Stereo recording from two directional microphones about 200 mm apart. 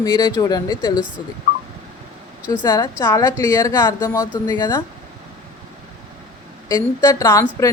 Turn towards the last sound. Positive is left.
turn(degrees=15)  # may be behind; listen again after turning